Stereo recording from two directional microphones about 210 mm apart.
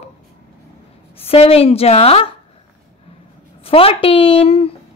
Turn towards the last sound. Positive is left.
turn(degrees=30)  # may be behind; listen again after turning